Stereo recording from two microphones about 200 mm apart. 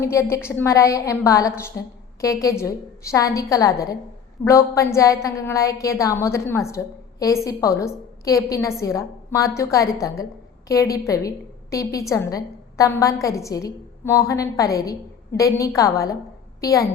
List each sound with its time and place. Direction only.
0.0 s a woman's voice: 15° left (ahead or behind)